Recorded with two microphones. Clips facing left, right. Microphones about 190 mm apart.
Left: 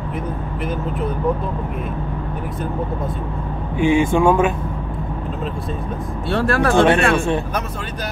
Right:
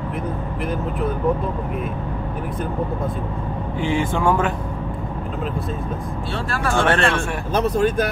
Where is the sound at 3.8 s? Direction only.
15° left (ahead or behind).